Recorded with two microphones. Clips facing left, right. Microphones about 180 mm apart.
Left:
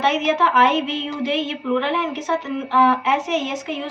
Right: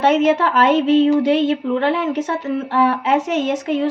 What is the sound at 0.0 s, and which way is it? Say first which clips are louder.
A woman's voice: right 5 dB; 55° right (ahead or behind).